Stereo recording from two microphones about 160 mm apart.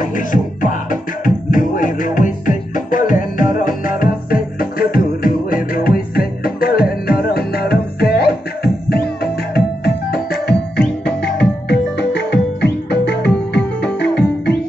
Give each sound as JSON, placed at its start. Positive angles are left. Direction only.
{"t": 0.0, "sound": "music", "side_deg": 55}
{"t": 11.7, "sound": "music", "side_deg": 90}